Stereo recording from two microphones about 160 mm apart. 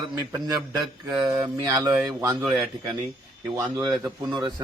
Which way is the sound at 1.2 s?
20° right (ahead or behind).